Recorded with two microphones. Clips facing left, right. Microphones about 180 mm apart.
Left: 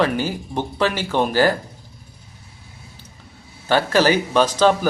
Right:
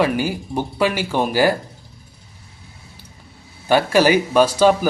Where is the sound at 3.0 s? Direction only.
10° right (ahead or behind).